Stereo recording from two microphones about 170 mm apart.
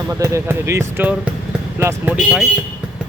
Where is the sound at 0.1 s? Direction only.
15° right (ahead or behind).